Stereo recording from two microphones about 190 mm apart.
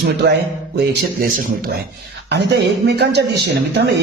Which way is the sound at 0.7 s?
55° right (ahead or behind).